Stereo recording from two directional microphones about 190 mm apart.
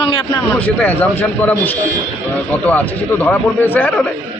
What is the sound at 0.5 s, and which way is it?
Speech, 10° left (ahead or behind).